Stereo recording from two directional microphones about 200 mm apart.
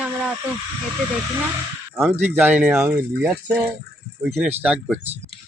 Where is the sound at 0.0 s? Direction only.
5° right (ahead or behind).